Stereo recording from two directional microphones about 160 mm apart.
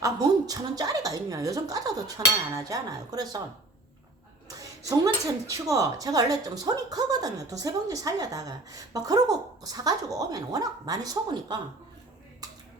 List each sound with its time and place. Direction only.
0.0 s speech: 20° right (ahead or behind)
4.4 s speech: 20° right (ahead or behind)